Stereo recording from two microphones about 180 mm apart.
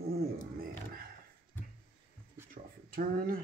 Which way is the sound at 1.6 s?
10° left (ahead or behind).